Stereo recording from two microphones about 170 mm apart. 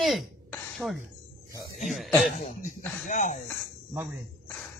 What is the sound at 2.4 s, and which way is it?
Speech, 45° left (ahead or behind).